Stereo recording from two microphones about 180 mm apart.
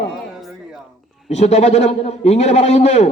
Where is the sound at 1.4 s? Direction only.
40° left (ahead or behind).